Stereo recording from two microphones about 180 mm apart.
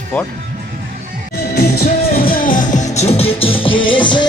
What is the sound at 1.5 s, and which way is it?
Music, 55° left (ahead or behind).